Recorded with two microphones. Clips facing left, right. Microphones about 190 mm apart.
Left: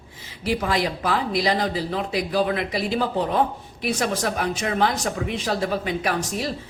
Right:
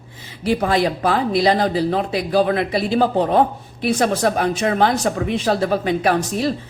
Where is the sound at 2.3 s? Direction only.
55° right (ahead or behind).